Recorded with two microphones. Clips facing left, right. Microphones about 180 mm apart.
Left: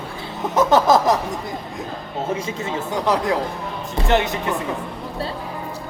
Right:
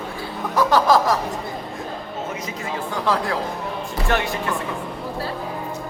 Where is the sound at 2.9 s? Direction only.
20° left (ahead or behind).